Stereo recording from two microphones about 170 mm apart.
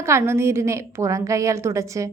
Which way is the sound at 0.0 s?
15° right (ahead or behind).